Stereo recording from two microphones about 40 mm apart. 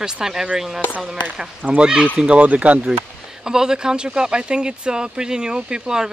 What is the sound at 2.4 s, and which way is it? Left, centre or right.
Speech, right.